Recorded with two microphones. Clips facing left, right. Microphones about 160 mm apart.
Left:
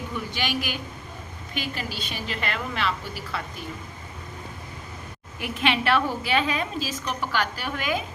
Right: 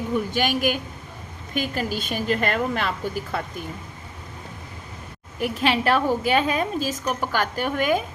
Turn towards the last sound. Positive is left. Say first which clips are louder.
# right 6 dB
turn(degrees=-50)  # may be behind; listen again after turning